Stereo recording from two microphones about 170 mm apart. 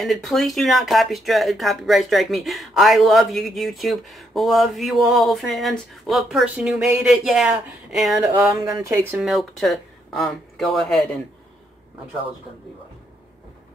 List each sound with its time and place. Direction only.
0.0 s speech: centre (ahead or behind)
8.5 s speech: 20° right (ahead or behind)
9.2 s speech: centre (ahead or behind)